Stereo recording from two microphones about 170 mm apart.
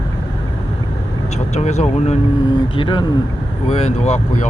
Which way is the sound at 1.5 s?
40° left (ahead or behind).